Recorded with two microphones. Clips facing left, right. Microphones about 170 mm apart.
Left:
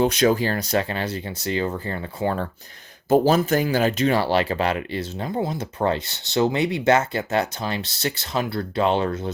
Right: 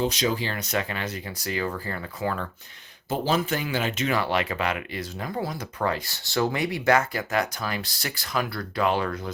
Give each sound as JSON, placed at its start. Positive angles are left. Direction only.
{"t": 0.0, "sound": "speech", "side_deg": 55}
{"t": 3.1, "sound": "speech", "side_deg": 45}